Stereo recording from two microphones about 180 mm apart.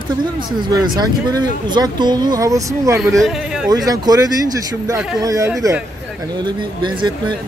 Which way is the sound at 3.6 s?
20° right (ahead or behind).